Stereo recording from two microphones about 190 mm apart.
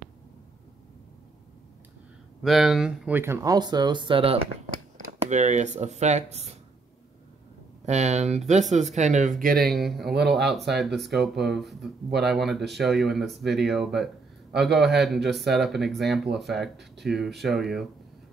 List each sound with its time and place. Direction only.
2.4 s speech: centre (ahead or behind); by 4.4 s 30° right (ahead or behind)
5.2 s speech: 40° right (ahead or behind)
7.8 s speech: 35° right (ahead or behind)
9.4 s speech: 50° right (ahead or behind)
9.7 s a man's voice: centre (ahead or behind)